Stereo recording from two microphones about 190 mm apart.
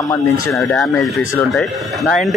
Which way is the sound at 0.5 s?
Centre (ahead or behind).